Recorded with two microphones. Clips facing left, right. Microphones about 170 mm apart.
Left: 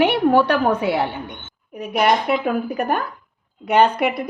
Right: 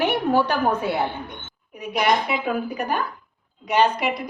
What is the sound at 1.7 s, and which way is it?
A woman's voice, 55° left (ahead or behind).